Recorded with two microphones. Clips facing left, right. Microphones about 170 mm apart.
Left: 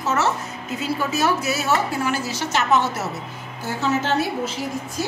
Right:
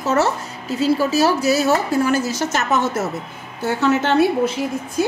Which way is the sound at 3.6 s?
65° right (ahead or behind).